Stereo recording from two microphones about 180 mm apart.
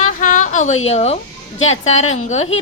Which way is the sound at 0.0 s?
45° left (ahead or behind).